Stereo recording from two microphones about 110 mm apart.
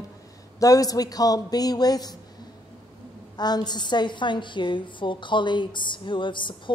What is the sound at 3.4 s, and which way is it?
A woman's voice, 40° left (ahead or behind).